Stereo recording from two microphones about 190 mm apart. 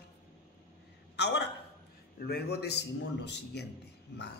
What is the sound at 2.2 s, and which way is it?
Speech, 55° left (ahead or behind).